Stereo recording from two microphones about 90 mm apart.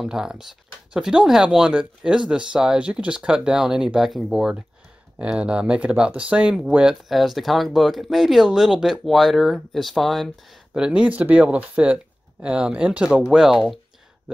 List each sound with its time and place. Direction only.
0.0 s speech: 5° right (ahead or behind)
10.9 s speech: 15° right (ahead or behind)